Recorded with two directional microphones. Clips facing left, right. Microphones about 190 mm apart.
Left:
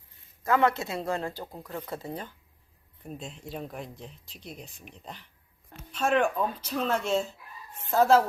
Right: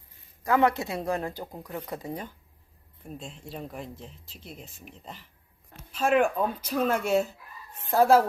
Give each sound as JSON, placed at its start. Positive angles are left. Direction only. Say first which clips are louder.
{"t": 0.4, "sound": "speech", "louder": "right 1 dB", "side_deg": -15}
{"t": 3.2, "sound": "speech", "louder": "left 1 dB", "side_deg": 0}
{"t": 6.6, "sound": "speech", "louder": "right 3 dB", "side_deg": -15}